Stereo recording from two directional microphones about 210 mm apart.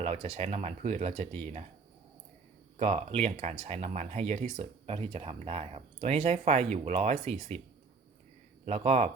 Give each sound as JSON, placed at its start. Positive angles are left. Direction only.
{"t": 0.0, "sound": "speech", "side_deg": -30}
{"t": 2.7, "sound": "speech", "side_deg": -30}
{"t": 8.6, "sound": "speech", "side_deg": -30}